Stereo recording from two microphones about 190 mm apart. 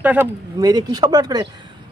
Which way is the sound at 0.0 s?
10° right (ahead or behind).